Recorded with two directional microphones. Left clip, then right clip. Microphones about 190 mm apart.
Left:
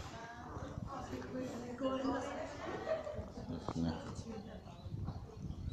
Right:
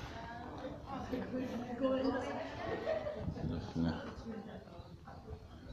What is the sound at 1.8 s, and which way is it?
Speech, 50° right (ahead or behind).